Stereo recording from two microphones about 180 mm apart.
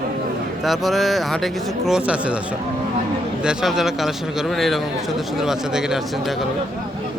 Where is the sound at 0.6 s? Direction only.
Centre (ahead or behind).